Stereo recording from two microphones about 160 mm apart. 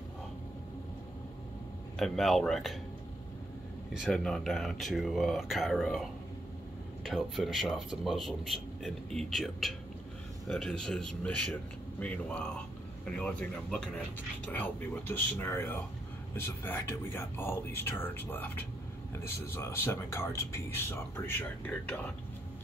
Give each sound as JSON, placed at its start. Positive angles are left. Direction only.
{"t": 2.0, "sound": "speech", "side_deg": 0}
{"t": 3.9, "sound": "speech", "side_deg": 0}